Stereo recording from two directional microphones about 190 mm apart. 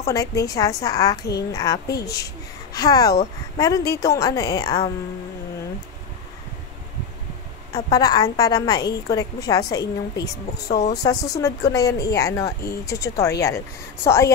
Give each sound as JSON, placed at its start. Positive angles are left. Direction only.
{"t": 0.0, "sound": "speech", "side_deg": 15}
{"t": 1.9, "sound": "a woman's voice", "side_deg": 60}
{"t": 2.7, "sound": "a woman's voice", "side_deg": 20}
{"t": 7.7, "sound": "a woman's voice", "side_deg": 20}